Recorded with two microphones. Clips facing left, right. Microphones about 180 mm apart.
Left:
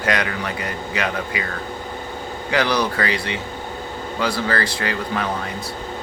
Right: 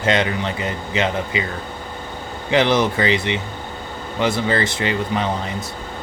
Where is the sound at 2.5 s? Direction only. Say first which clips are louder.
Right 4 dB; 20° right (ahead or behind).